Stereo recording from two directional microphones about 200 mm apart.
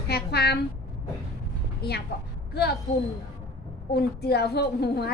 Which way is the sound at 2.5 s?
55° left (ahead or behind).